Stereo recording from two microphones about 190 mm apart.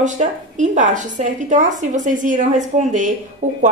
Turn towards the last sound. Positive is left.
turn(degrees=-40)  # may be behind; listen again after turning